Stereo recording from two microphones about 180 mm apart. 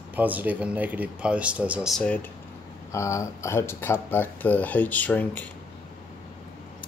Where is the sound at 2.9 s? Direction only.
15° left (ahead or behind).